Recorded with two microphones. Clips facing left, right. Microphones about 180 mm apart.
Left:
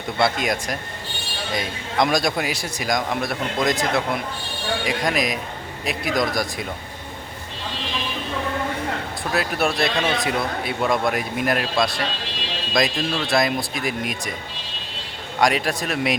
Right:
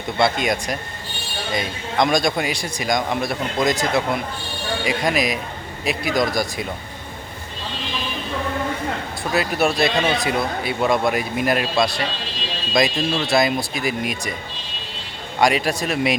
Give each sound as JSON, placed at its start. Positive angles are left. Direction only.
{"t": 0.2, "sound": "speech", "side_deg": 0}
{"t": 9.3, "sound": "speech", "side_deg": 0}
{"t": 15.4, "sound": "speech", "side_deg": 0}